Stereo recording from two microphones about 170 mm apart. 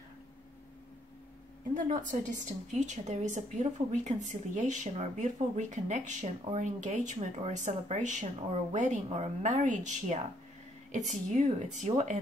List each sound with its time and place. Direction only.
1.8 s a woman's voice: 50° right (ahead or behind)